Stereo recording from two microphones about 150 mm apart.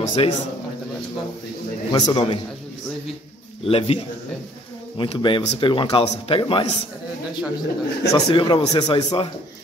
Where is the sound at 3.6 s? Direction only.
40° left (ahead or behind).